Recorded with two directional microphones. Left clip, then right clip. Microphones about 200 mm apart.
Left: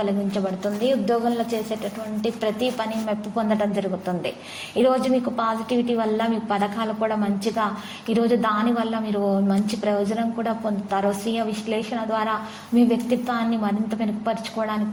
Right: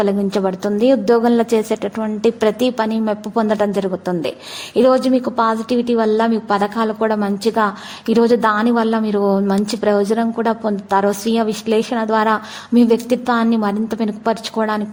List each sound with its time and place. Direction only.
0.0 s a woman's voice: 45° right (ahead or behind)